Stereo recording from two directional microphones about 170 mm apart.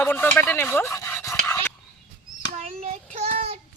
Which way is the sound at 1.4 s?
15° left (ahead or behind).